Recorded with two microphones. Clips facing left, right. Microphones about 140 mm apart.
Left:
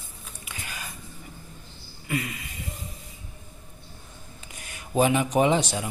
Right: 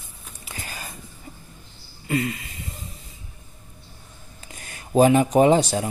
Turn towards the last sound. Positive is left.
turn(degrees=-40)  # may be behind; listen again after turning